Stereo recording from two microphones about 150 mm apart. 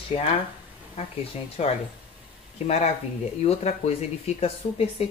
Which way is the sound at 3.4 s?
45° left (ahead or behind).